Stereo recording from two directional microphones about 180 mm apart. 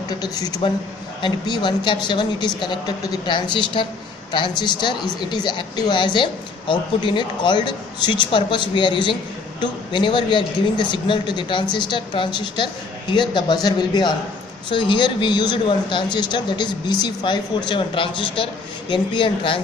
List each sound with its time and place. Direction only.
0.1 s a man's voice: 20° left (ahead or behind)